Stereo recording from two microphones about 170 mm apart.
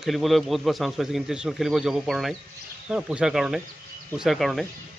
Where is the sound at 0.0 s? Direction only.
Centre (ahead or behind).